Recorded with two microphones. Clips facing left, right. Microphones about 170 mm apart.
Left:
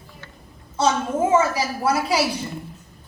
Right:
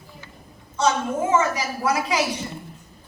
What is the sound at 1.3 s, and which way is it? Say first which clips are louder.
Speech: left 2 dB; 30° left (ahead or behind).